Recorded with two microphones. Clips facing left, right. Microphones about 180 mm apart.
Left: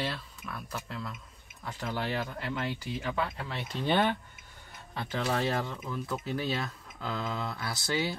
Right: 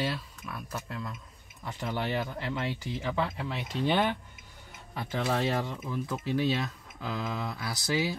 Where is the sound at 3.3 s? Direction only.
5° right (ahead or behind).